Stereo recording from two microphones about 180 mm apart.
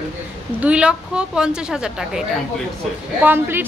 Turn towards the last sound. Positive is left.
turn(degrees=-10)  # may be behind; listen again after turning